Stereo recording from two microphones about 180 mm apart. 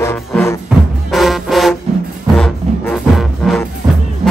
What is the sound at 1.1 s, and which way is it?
Music, centre (ahead or behind).